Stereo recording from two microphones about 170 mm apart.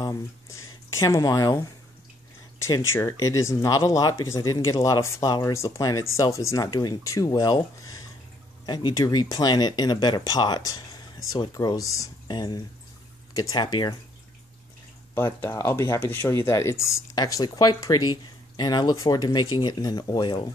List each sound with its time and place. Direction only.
0.0 s speech: 20° left (ahead or behind)
2.6 s speech: 20° left (ahead or behind)
15.1 s speech: 15° left (ahead or behind)